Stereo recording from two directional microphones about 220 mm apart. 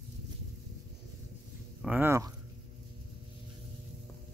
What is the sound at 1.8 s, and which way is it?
Speech, 10° right (ahead or behind).